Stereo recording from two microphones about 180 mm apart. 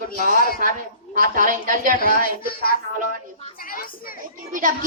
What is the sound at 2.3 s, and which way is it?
Speech, 55° left (ahead or behind).